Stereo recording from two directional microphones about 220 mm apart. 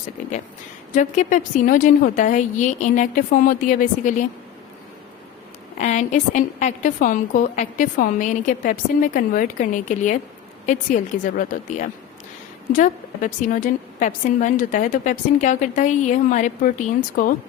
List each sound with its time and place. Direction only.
0.9 s a woman's voice: 35° left (ahead or behind)
5.7 s a woman's voice: 35° left (ahead or behind)